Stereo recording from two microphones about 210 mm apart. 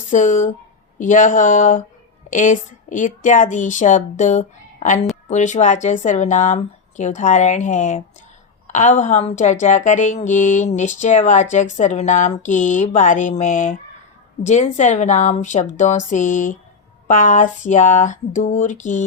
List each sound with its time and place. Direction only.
0.1 s speech: 35° left (ahead or behind)